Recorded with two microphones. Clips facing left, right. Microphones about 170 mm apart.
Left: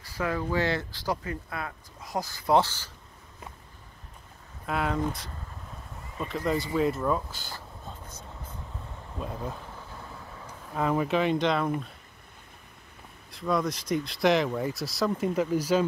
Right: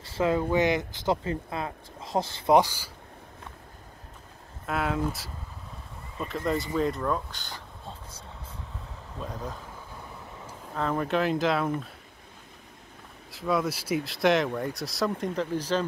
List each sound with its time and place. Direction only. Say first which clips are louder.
0.0 s speech: right 5 dB; 25° right (ahead or behind)
2.5 s speech: right 2 dB; 15° right (ahead or behind)
4.6 s speech: even; centre (ahead or behind)
9.2 s speech: left 1 dB; 5° left (ahead or behind)
10.7 s speech: left 1 dB; 10° left (ahead or behind)
13.3 s speech: even; 5° right (ahead or behind)